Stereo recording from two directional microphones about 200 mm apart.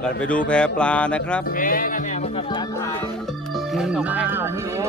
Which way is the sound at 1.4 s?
45° left (ahead or behind).